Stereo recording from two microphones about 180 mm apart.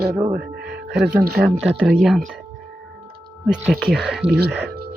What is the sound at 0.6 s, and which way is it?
Music, 70° right (ahead or behind).